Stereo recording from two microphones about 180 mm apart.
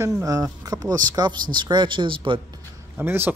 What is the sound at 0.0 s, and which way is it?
Speech, 15° right (ahead or behind).